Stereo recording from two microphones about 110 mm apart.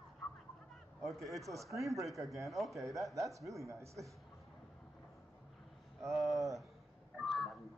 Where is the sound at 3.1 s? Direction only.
30° right (ahead or behind).